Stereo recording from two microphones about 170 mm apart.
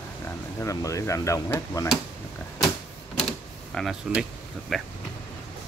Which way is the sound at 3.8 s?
5° left (ahead or behind).